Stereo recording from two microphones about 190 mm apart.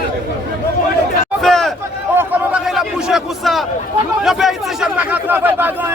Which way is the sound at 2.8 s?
Centre (ahead or behind).